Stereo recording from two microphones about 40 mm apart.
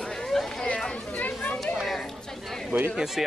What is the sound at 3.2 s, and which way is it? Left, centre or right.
Speech, centre.